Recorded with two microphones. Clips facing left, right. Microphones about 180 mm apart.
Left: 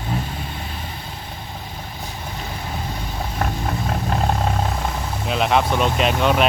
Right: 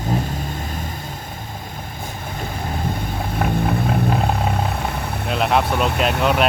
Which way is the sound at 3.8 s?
Centre (ahead or behind).